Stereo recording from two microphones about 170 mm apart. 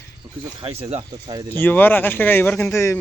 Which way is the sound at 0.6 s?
35° right (ahead or behind).